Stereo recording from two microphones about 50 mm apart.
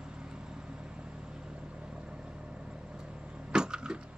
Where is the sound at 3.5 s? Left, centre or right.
Centre.